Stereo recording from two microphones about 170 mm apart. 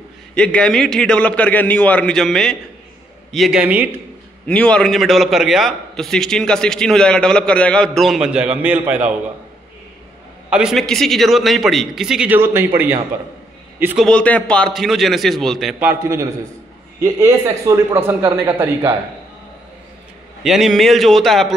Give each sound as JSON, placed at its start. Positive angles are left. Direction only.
{"t": 0.3, "sound": "a man's voice", "side_deg": 5}
{"t": 4.5, "sound": "a man's voice", "side_deg": 5}
{"t": 10.5, "sound": "a man's voice", "side_deg": 0}
{"t": 14.0, "sound": "a man's voice", "side_deg": 5}
{"t": 15.8, "sound": "a man's voice", "side_deg": -10}
{"t": 20.4, "sound": "a man's voice", "side_deg": 0}